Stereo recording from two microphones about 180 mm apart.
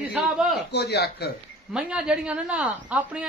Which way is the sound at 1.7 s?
5° right (ahead or behind).